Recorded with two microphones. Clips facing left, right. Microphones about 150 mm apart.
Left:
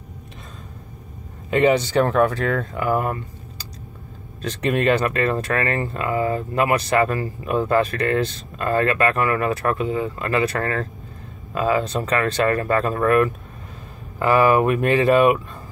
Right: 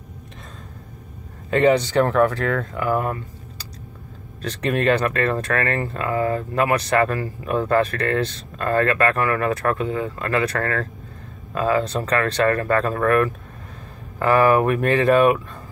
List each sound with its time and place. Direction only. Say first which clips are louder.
1.5 s speech: even; 10° left (ahead or behind)
4.4 s speech: left 1 dB; 15° left (ahead or behind)